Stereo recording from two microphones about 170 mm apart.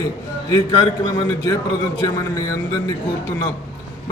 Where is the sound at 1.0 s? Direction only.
20° left (ahead or behind).